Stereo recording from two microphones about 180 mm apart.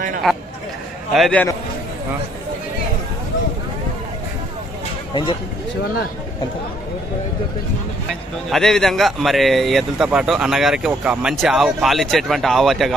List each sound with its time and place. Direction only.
0.2 s speech: centre (ahead or behind)
8.1 s speech: centre (ahead or behind)